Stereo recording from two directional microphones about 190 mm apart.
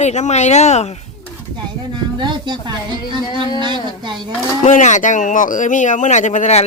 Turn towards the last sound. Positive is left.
turn(degrees=35)  # may be behind; listen again after turning